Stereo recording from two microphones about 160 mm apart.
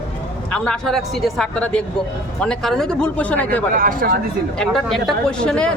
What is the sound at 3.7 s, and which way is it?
Speech, 60° right (ahead or behind).